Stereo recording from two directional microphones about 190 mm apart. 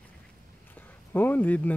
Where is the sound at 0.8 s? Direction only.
10° left (ahead or behind).